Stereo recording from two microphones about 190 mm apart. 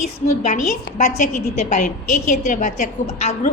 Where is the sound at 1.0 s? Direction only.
40° left (ahead or behind).